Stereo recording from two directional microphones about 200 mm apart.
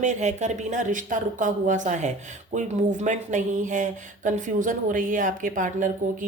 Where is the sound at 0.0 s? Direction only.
35° right (ahead or behind).